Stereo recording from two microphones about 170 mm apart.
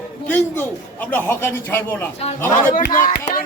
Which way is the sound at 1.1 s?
15° left (ahead or behind).